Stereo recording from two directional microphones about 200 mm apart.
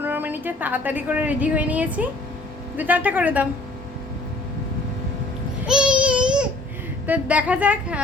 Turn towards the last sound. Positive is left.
turn(degrees=-5)  # may be behind; listen again after turning